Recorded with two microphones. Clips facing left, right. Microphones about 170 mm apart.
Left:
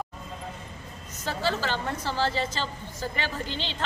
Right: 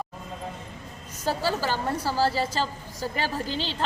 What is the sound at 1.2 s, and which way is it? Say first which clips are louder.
A woman's voice: right 2 dB; 10° right (ahead or behind).